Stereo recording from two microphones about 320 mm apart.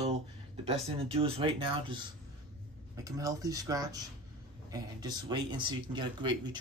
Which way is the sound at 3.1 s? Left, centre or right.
Centre.